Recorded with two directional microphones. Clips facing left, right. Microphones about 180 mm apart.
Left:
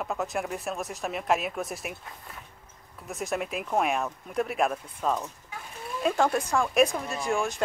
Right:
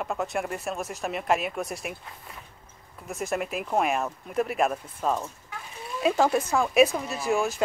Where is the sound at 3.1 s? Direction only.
Centre (ahead or behind).